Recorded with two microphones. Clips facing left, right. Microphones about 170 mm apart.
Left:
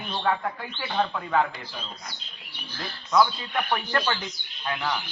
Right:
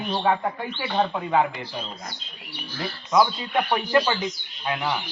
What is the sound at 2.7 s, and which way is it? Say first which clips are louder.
A man's voice: right 2 dB; 15° right (ahead or behind).